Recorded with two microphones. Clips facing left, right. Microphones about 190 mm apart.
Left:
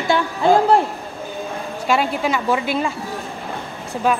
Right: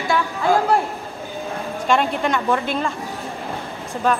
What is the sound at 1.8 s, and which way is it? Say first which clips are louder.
A woman's voice: even; 5° left (ahead or behind).